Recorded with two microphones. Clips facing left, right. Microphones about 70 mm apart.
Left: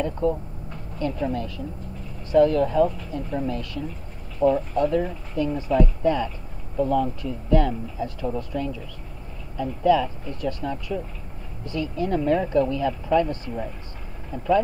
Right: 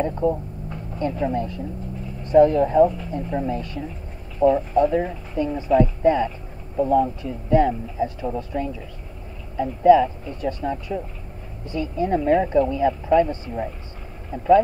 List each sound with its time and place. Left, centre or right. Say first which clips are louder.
0.2 s speech: right 2 dB; centre